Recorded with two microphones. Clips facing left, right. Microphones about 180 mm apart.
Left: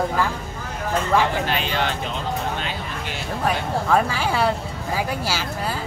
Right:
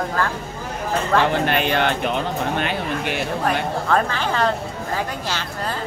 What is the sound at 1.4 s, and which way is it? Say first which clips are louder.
Speech: right 4 dB; 55° right (ahead or behind).